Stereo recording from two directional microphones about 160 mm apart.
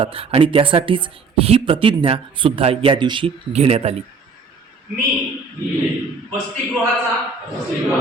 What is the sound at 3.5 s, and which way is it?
Speech, 40° right (ahead or behind).